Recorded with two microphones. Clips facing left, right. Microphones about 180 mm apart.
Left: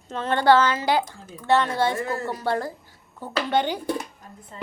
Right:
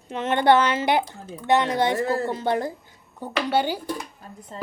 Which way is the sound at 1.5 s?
15° right (ahead or behind).